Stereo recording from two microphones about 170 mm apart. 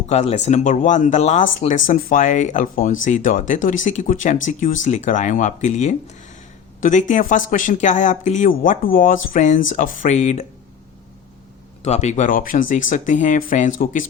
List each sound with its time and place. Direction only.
0.1 s speech: 40° left (ahead or behind)
11.8 s speech: 40° left (ahead or behind)